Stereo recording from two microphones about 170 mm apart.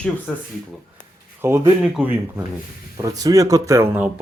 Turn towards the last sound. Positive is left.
turn(degrees=-10)  # may be behind; listen again after turning